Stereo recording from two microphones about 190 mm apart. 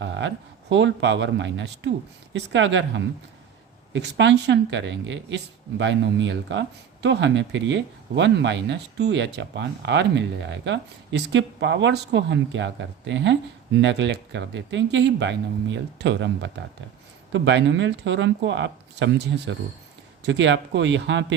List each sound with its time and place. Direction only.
0.0 s speech: 75° right (ahead or behind)